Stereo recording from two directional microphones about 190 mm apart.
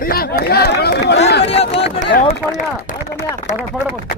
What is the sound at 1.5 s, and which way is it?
Speech, 30° left (ahead or behind).